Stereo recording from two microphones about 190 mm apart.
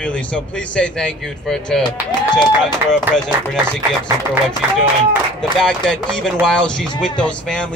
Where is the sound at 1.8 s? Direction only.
25° left (ahead or behind).